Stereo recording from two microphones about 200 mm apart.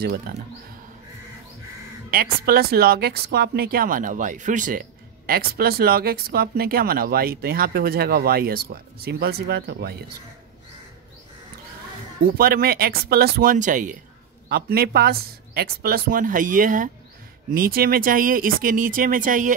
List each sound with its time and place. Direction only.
0.0 s speech: 50° right (ahead or behind)
2.0 s speech: 50° right (ahead or behind)
12.4 s speech: 50° right (ahead or behind)
14.5 s speech: 50° right (ahead or behind)